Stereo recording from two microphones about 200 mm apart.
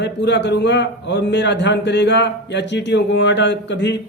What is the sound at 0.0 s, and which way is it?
A man's voice, 60° left (ahead or behind).